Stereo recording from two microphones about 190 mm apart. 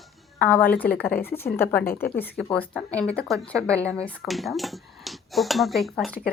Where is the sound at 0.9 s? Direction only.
50° left (ahead or behind).